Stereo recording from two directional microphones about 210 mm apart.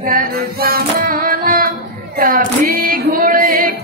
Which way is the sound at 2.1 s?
45° right (ahead or behind).